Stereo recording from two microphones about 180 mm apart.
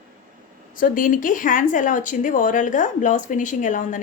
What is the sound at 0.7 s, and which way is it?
A woman's voice, 50° left (ahead or behind).